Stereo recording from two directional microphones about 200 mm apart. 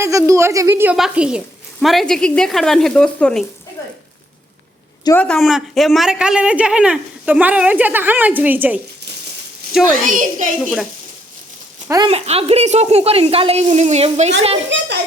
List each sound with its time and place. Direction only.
0.0 s speech: 15° right (ahead or behind); by 3.4 s 5° left (ahead or behind)
5.0 s speech: 10° left (ahead or behind); by 8.8 s 10° right (ahead or behind)
10.0 s speech: 40° right (ahead or behind)
10.6 s speech: centre (ahead or behind)
11.9 s speech: 20° right (ahead or behind)
12.1 s speech: 30° right (ahead or behind)